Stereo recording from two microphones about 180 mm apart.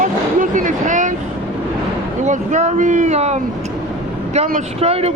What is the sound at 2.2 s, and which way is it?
A man's voice, 40° right (ahead or behind).